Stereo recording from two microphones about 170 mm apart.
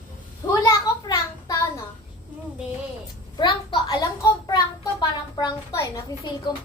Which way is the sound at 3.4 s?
30° left (ahead or behind).